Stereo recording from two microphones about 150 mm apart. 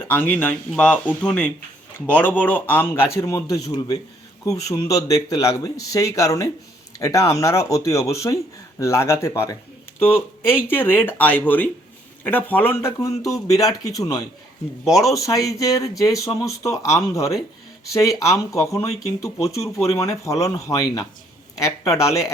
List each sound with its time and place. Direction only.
0.1 s a man's voice: 10° left (ahead or behind)